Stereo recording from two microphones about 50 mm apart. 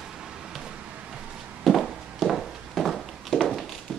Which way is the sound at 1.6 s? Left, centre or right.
Centre.